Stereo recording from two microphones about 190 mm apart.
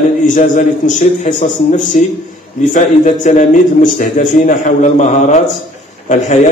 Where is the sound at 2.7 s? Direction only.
40° left (ahead or behind).